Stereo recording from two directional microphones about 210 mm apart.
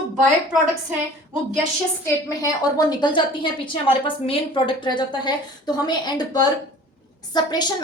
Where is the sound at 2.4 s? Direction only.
15° left (ahead or behind).